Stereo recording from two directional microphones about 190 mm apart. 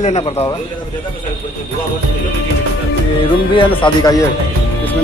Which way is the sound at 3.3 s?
25° left (ahead or behind).